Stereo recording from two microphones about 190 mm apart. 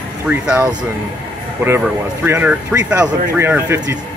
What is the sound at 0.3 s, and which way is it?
Speech, 10° right (ahead or behind).